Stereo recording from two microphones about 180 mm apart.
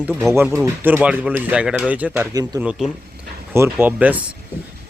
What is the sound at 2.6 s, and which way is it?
Speech, 5° right (ahead or behind).